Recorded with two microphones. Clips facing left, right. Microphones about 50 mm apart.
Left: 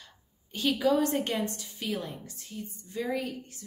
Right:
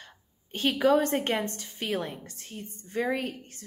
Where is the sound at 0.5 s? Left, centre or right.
Right.